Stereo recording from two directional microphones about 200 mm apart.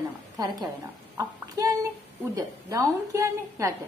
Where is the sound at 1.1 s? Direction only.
15° right (ahead or behind).